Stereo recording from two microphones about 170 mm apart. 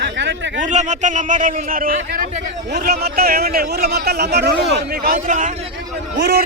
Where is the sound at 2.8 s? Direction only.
65° right (ahead or behind); by 5.5 s 50° right (ahead or behind).